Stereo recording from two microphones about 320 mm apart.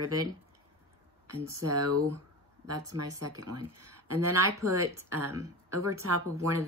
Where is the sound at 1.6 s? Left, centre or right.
Right.